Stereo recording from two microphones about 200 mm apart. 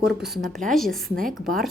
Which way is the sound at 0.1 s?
Centre (ahead or behind).